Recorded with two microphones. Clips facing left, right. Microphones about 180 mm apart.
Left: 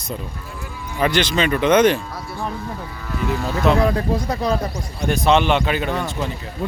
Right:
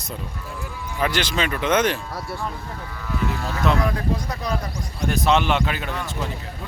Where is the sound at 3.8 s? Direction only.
30° left (ahead or behind).